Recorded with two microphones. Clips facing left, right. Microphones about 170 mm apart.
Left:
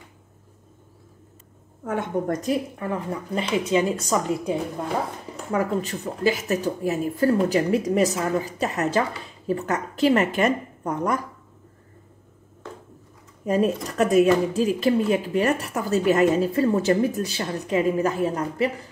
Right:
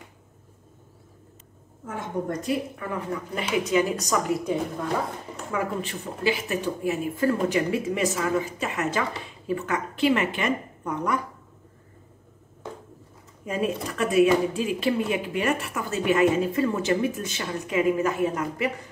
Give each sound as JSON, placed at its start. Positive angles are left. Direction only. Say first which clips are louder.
{"t": 1.9, "sound": "a woman's voice", "louder": "left 5 dB", "side_deg": 65}
{"t": 2.8, "sound": "speech", "louder": "left 2 dB", "side_deg": 30}
{"t": 5.5, "sound": "speech", "louder": "left 5 dB", "side_deg": 40}
{"t": 13.5, "sound": "speech", "louder": "left 5 dB", "side_deg": 40}